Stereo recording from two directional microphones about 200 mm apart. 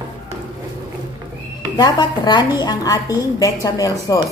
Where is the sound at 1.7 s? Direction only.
20° left (ahead or behind).